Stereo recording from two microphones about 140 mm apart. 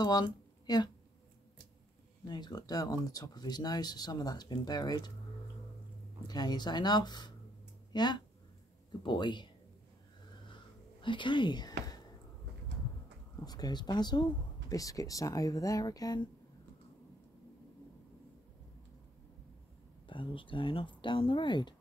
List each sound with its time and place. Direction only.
0.0 s speech: 30° left (ahead or behind)
2.2 s speech: 30° left (ahead or behind)
6.2 s speech: 30° left (ahead or behind)
10.5 s a sound: 35° left (ahead or behind)
13.5 s speech: 30° left (ahead or behind)
20.1 s speech: 35° left (ahead or behind)